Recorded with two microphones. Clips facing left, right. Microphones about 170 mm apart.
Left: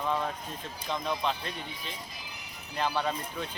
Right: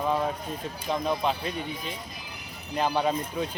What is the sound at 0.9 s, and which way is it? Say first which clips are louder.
Speech: right 4 dB; 10° right (ahead or behind).